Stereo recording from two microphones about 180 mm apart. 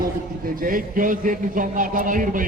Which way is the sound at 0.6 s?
50° right (ahead or behind).